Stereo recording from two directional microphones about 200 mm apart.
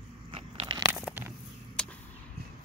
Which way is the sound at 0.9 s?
Centre (ahead or behind).